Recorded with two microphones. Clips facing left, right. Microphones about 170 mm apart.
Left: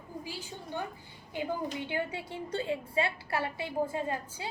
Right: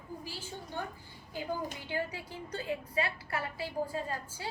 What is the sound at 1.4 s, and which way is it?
A woman's voice, 25° left (ahead or behind).